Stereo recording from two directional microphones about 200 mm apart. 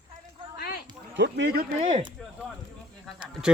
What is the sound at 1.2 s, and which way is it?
Speech, 60° right (ahead or behind).